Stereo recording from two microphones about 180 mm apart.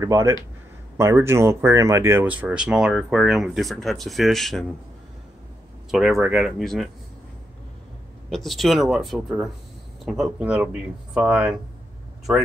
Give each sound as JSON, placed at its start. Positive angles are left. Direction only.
{"t": 0.0, "sound": "speech", "side_deg": -15}
{"t": 5.9, "sound": "speech", "side_deg": 0}
{"t": 8.3, "sound": "speech", "side_deg": 0}